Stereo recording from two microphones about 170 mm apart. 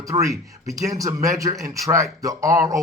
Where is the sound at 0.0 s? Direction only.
20° right (ahead or behind).